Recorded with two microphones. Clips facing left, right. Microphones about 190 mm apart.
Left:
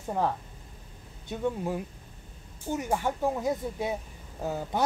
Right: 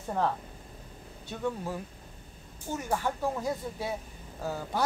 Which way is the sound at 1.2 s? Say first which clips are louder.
Left 3 dB; 20° left (ahead or behind).